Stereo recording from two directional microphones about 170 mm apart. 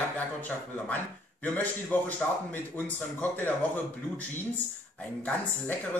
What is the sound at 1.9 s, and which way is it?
Speech, 10° left (ahead or behind).